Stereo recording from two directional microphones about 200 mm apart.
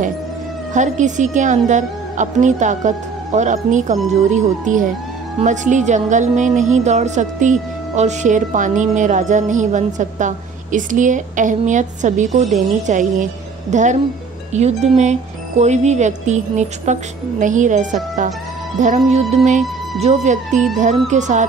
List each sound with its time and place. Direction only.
0.7 s a woman's voice: 40° right (ahead or behind)